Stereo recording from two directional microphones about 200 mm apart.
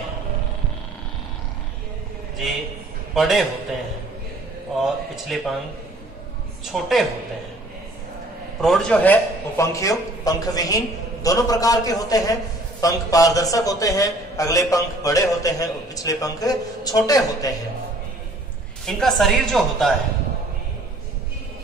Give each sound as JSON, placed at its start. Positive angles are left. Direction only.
{"t": 3.2, "sound": "a woman's voice", "side_deg": 0}
{"t": 4.8, "sound": "a woman's voice", "side_deg": 0}
{"t": 6.6, "sound": "a woman's voice", "side_deg": 0}
{"t": 8.5, "sound": "a man's voice", "side_deg": 0}
{"t": 18.9, "sound": "a woman's voice", "side_deg": 0}